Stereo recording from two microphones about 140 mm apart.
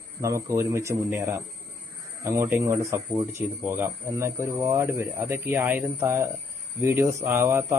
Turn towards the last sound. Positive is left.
turn(degrees=-20)  # may be behind; listen again after turning